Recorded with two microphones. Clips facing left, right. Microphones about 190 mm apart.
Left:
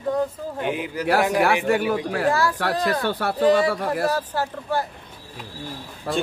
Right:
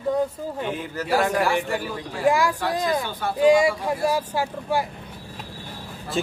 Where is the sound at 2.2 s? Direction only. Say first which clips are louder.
Right 3 dB; 15° right (ahead or behind).